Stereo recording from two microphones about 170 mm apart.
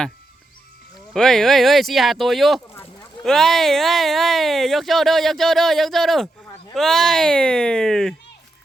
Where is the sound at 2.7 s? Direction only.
15° left (ahead or behind).